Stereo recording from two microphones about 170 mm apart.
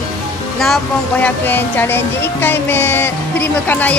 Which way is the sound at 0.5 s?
Centre (ahead or behind).